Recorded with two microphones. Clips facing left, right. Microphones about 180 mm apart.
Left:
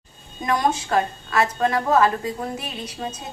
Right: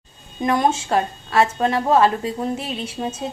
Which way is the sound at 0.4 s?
25° right (ahead or behind).